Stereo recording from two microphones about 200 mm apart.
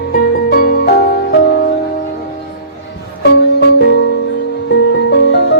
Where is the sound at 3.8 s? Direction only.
60° left (ahead or behind).